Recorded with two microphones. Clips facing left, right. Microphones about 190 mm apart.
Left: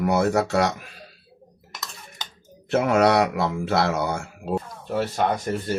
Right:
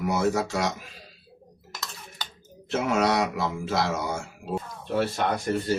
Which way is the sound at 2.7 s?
60° left (ahead or behind).